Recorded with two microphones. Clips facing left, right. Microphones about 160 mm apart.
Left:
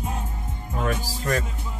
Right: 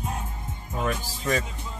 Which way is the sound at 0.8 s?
Centre (ahead or behind).